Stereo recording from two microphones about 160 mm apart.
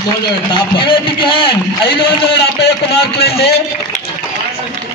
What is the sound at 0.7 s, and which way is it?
A man's voice, 30° left (ahead or behind).